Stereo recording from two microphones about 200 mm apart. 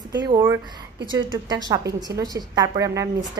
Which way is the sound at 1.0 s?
20° right (ahead or behind).